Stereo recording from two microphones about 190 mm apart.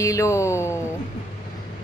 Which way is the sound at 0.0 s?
15° left (ahead or behind).